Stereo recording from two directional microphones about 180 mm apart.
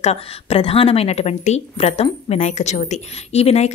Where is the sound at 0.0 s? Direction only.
35° left (ahead or behind).